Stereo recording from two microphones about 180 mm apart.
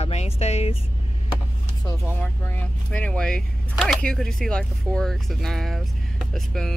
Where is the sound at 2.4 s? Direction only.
10° left (ahead or behind).